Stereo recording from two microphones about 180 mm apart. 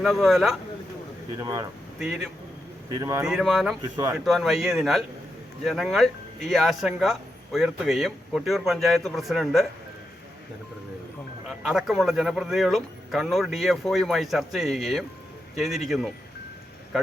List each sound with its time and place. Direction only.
0.0 s speech: centre (ahead or behind)
1.4 s speech: 20° right (ahead or behind)
2.0 s speech: 5° right (ahead or behind)
2.9 s speech: 20° right (ahead or behind)
3.2 s speech: centre (ahead or behind)
3.8 s speech: 25° right (ahead or behind)
4.3 s speech: centre (ahead or behind)
11.4 s speech: centre (ahead or behind)